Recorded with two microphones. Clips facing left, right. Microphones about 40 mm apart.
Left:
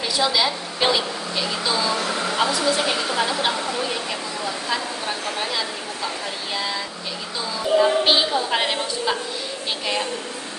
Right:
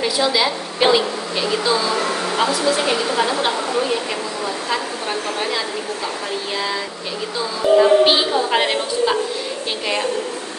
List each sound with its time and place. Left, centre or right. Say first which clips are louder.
0.0 s a woman's voice: right 3 dB; centre
2.0 s a sound: right 3 dB; right
2.5 s a woman's voice: right 3 dB; centre
4.6 s a woman's voice: right 3 dB; centre